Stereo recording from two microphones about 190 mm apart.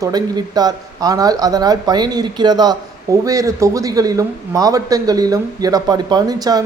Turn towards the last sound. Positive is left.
turn(degrees=-20)  # may be behind; listen again after turning